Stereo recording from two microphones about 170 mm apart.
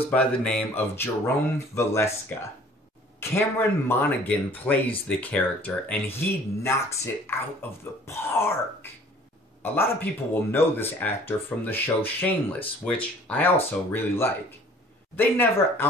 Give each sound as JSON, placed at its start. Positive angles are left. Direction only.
{"t": 0.0, "sound": "speech", "side_deg": 5}
{"t": 9.6, "sound": "speech", "side_deg": 10}